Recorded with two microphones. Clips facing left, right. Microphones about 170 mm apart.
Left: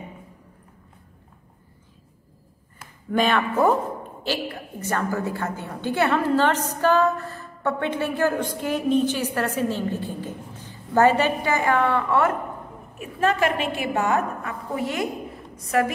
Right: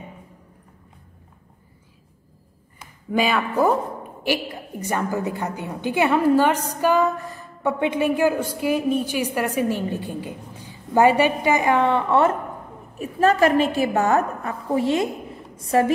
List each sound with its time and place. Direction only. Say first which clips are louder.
2.8 s speech: even; 5° right (ahead or behind)
4.2 s a woman's voice: right 4 dB; 15° right (ahead or behind)
13.0 s a woman's voice: right 4 dB; 35° right (ahead or behind)